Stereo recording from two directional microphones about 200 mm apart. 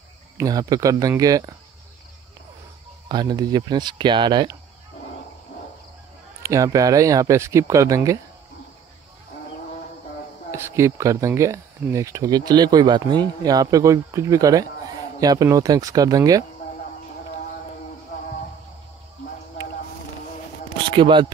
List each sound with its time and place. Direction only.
0.4 s speech: 20° right (ahead or behind)
3.1 s speech: 20° right (ahead or behind)
6.4 s speech: 15° right (ahead or behind)
10.5 s speech: 15° right (ahead or behind)
20.9 s a man's voice: 25° right (ahead or behind)